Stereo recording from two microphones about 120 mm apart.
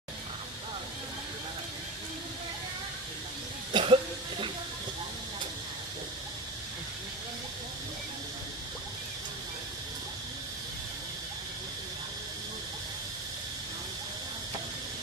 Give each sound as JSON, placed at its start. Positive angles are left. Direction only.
{"t": 3.7, "sound": "cough", "side_deg": -45}